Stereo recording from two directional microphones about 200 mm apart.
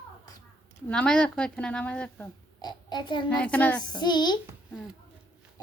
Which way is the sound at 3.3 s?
5° left (ahead or behind).